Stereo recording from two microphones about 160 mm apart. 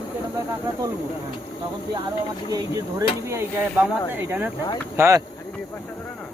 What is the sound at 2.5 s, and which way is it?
Speech, 25° right (ahead or behind).